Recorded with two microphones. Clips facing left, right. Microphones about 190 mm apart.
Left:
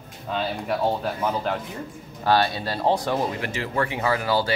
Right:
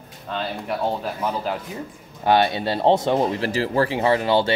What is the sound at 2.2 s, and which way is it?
Speech, 20° right (ahead or behind).